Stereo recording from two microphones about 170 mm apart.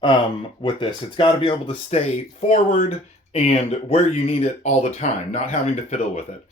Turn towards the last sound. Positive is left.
turn(degrees=40)  # may be behind; listen again after turning